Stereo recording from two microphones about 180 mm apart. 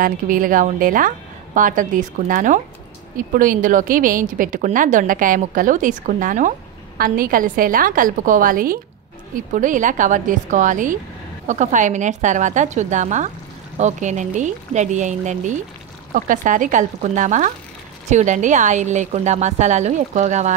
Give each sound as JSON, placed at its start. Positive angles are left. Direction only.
{"t": 0.0, "sound": "a woman's voice", "side_deg": -50}